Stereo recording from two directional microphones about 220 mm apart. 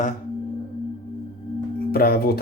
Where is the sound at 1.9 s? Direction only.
45° left (ahead or behind).